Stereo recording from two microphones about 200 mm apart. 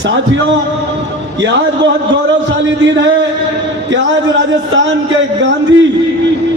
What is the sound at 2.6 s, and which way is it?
Speech, 65° right (ahead or behind).